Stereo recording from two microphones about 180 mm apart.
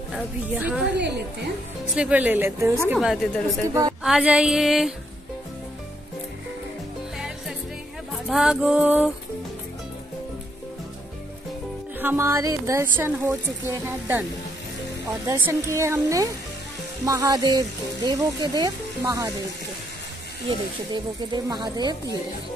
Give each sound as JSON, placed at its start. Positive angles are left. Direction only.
{"t": 0.1, "sound": "a woman's voice", "side_deg": -10}
{"t": 0.9, "sound": "a woman's voice", "side_deg": -70}
{"t": 2.0, "sound": "a woman's voice", "side_deg": -10}
{"t": 3.6, "sound": "a woman's voice", "side_deg": -15}
{"t": 4.0, "sound": "music", "side_deg": -5}
{"t": 7.2, "sound": "music", "side_deg": -5}
{"t": 12.0, "sound": "a woman's voice", "side_deg": -15}
{"t": 20.9, "sound": "speech", "side_deg": -25}